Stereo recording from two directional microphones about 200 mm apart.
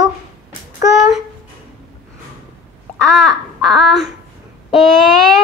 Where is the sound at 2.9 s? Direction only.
5° left (ahead or behind).